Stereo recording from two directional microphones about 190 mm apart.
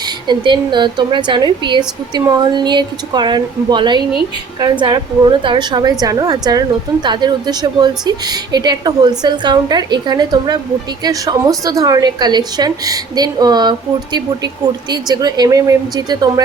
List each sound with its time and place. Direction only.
0.3 s a woman's voice: 25° right (ahead or behind)